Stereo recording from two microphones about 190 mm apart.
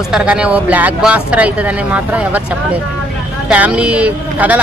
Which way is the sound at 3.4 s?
5° right (ahead or behind).